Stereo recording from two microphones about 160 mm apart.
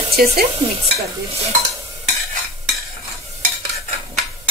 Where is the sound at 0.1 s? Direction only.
75° right (ahead or behind).